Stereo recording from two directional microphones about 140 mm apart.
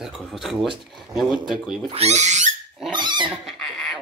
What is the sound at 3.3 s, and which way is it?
Pig, centre (ahead or behind).